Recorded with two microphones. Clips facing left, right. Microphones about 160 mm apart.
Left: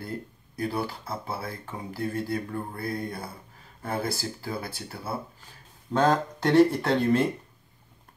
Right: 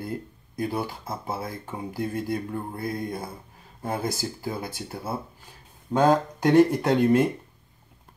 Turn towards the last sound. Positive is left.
turn(degrees=-15)  # may be behind; listen again after turning